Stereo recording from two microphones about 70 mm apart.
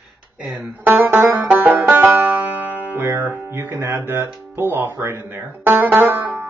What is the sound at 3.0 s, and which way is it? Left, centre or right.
Speech, right.